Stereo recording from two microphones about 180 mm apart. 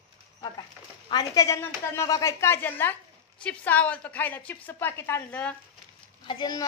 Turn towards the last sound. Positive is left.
turn(degrees=25)  # may be behind; listen again after turning